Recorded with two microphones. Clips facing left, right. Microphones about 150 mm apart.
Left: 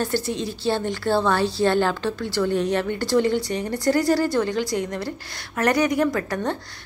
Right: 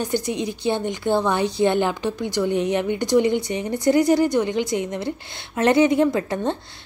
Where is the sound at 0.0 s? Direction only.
15° right (ahead or behind).